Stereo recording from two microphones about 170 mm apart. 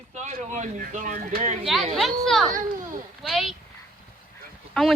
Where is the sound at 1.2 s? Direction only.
60° right (ahead or behind).